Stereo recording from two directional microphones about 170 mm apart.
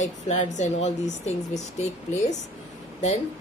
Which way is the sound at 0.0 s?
45° left (ahead or behind).